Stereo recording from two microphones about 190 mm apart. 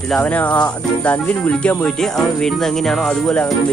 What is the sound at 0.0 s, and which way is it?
Speech, 5° left (ahead or behind).